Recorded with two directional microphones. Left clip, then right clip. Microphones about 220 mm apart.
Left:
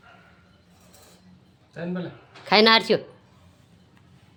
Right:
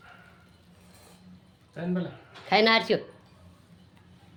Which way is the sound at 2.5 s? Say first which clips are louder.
Left 5 dB; 20° left (ahead or behind).